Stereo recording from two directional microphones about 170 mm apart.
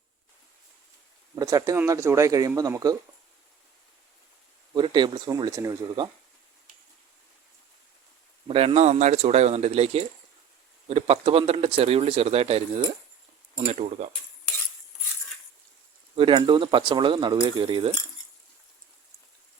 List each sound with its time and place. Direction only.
1.4 s speech: 20° right (ahead or behind)
4.7 s speech: 25° right (ahead or behind)
8.4 s a man's voice: 35° right (ahead or behind)
13.7 s a man's voice: 40° right (ahead or behind)
16.1 s speech: 30° right (ahead or behind)